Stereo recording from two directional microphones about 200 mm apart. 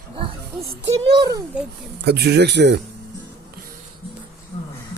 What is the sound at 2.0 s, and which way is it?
Speech, 55° right (ahead or behind).